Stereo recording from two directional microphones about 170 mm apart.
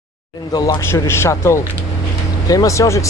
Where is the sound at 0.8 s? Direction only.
15° left (ahead or behind).